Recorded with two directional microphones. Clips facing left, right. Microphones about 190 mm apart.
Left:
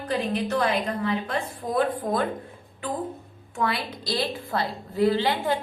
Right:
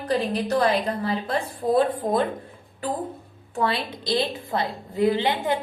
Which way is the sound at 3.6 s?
25° right (ahead or behind).